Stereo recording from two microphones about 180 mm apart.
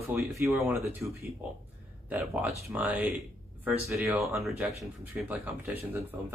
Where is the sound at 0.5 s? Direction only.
Centre (ahead or behind).